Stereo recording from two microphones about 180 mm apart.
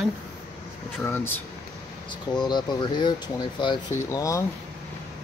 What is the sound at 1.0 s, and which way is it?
Speech, 10° left (ahead or behind).